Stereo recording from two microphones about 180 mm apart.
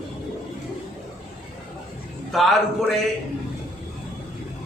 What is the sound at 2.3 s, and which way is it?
Speech, centre (ahead or behind).